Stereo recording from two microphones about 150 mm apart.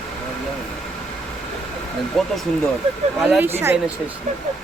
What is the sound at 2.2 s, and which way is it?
Speech, 5° left (ahead or behind).